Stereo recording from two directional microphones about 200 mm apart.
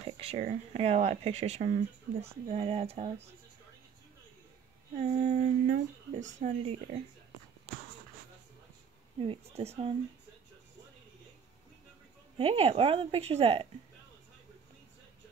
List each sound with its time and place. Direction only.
0.0 s speech: 30° right (ahead or behind)
4.9 s speech: 35° right (ahead or behind)
9.2 s a woman's voice: 30° right (ahead or behind)
12.4 s a woman's voice: 30° right (ahead or behind)